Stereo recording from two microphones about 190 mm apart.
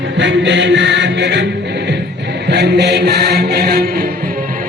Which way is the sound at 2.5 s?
60° right (ahead or behind).